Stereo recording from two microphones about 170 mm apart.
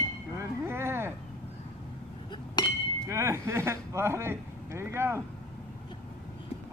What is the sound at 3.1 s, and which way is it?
Speech, 15° right (ahead or behind).